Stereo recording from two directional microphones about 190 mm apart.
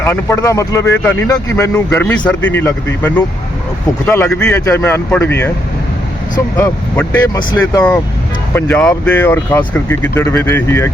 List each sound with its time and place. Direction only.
0.0 s speech: 15° left (ahead or behind)
4.5 s speech: 15° left (ahead or behind)
7.3 s speech: 20° left (ahead or behind)
8.5 s speech: 10° left (ahead or behind)